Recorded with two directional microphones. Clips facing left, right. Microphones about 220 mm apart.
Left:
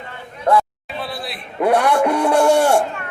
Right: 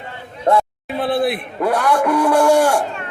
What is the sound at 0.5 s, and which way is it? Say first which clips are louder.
Speech: right 1 dB; 25° right (ahead or behind).